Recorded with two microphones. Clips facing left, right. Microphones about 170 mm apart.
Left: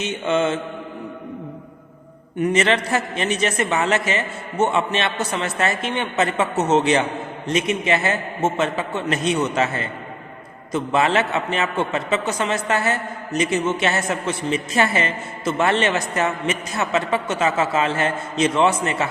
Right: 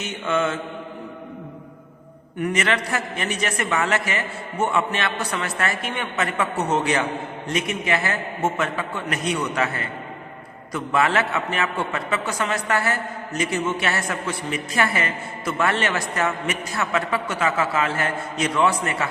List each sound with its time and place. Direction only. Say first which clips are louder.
0.0 s a man's voice: left 3 dB; 20° left (ahead or behind)
2.4 s a man's voice: left 4 dB; 25° left (ahead or behind)